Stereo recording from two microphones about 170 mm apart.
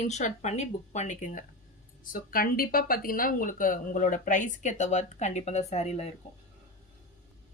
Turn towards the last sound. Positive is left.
turn(degrees=40)  # may be behind; listen again after turning